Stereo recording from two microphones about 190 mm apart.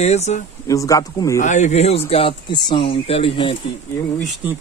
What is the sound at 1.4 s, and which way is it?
Speech, 40° left (ahead or behind).